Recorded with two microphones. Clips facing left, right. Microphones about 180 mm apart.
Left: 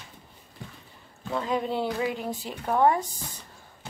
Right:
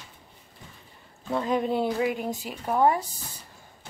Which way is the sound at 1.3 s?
20° right (ahead or behind).